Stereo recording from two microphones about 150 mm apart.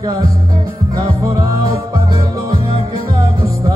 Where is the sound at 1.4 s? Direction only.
25° right (ahead or behind).